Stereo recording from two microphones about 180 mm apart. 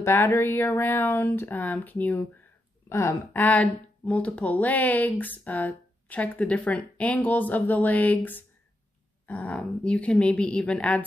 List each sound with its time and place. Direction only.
0.0 s speech: 15° left (ahead or behind)